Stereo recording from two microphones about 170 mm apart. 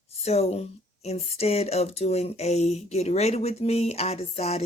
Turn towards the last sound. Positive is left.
turn(degrees=40)  # may be behind; listen again after turning